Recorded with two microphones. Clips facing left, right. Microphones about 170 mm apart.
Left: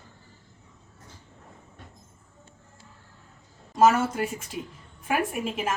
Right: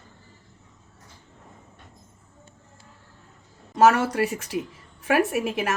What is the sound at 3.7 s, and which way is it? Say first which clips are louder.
A woman's voice: right 2 dB; 75° right (ahead or behind).